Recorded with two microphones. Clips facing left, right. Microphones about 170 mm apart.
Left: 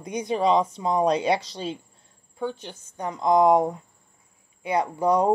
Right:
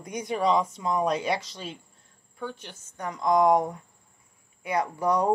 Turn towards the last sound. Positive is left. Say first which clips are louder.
# left 3 dB
turn(degrees=25)  # may be behind; listen again after turning